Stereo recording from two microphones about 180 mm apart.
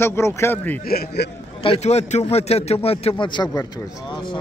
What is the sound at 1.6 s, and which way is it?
A man's voice, 35° left (ahead or behind).